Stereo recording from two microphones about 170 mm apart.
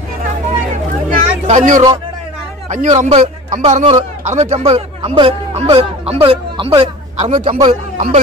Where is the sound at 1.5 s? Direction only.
45° right (ahead or behind).